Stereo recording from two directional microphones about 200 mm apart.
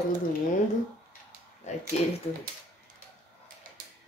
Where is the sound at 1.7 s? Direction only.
35° left (ahead or behind).